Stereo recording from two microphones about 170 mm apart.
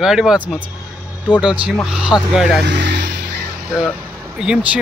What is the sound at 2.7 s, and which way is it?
Vehicle, 90° right.